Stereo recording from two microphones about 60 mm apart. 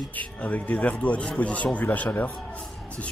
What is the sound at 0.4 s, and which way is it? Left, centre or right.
A man's voice, left.